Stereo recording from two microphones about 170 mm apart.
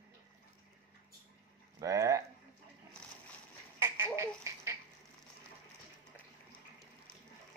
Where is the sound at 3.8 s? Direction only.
15° right (ahead or behind).